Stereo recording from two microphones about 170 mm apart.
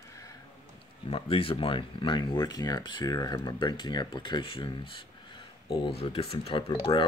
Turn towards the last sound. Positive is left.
turn(degrees=35)  # may be behind; listen again after turning